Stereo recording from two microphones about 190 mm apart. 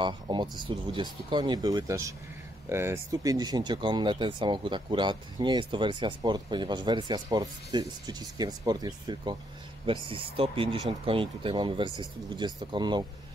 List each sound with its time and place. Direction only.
0.0 s speech: 25° right (ahead or behind)